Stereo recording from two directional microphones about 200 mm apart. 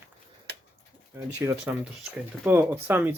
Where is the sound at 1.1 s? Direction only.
10° right (ahead or behind).